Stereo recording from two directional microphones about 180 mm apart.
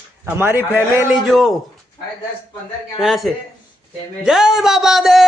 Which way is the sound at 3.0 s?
Centre (ahead or behind).